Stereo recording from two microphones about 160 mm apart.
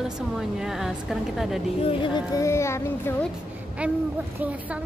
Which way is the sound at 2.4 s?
15° left (ahead or behind).